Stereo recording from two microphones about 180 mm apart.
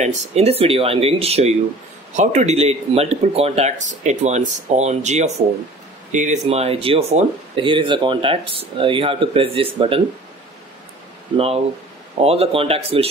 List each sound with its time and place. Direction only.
0.0 s speech: 35° right (ahead or behind)
11.3 s speech: 35° right (ahead or behind)